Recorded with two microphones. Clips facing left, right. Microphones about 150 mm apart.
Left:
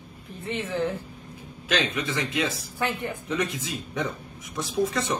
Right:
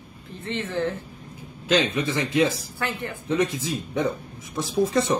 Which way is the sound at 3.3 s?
30° right (ahead or behind).